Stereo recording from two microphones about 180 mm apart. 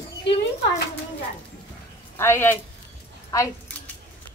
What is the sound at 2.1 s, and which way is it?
Speech, 15° left (ahead or behind).